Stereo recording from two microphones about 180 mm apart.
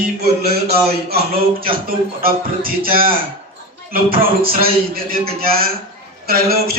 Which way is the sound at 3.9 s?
55° right (ahead or behind).